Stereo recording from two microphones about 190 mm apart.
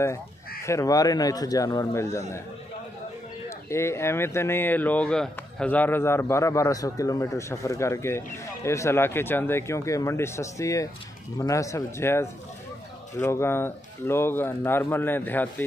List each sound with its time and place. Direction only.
0.7 s speech: 15° left (ahead or behind)
3.4 s speech: 15° left (ahead or behind)